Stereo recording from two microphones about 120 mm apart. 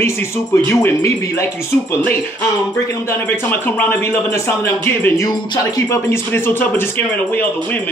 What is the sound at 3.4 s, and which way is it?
Speech, 15° left (ahead or behind).